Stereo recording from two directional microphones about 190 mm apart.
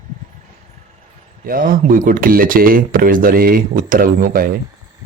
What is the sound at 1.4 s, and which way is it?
Speech, 50° right (ahead or behind).